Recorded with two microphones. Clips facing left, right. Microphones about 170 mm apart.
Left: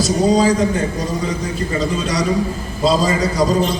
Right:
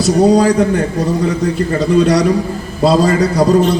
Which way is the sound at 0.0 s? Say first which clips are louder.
Right 4 dB; 65° right (ahead or behind).